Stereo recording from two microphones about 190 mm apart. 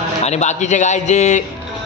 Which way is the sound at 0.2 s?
35° left (ahead or behind).